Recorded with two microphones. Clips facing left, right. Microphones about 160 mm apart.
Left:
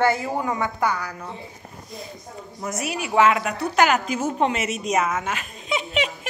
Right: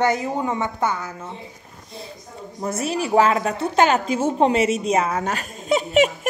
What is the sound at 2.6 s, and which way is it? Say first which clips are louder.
A woman's voice: right 5 dB; 30° right (ahead or behind).